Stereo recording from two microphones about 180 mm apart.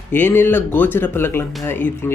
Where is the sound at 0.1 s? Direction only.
10° left (ahead or behind).